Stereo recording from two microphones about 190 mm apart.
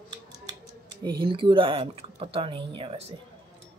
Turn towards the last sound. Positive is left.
turn(degrees=-30)  # may be behind; listen again after turning